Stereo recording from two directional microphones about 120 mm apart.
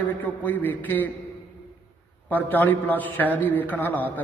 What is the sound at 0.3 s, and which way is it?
Speech, 15° left (ahead or behind).